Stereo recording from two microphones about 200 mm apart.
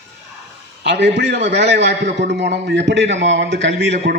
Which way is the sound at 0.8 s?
60° right (ahead or behind).